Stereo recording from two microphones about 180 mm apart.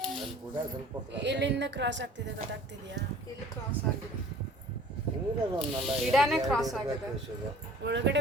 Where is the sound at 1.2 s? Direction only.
75° right (ahead or behind).